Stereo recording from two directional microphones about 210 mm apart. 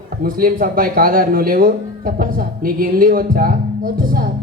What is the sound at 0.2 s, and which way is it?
Speech, 45° right (ahead or behind).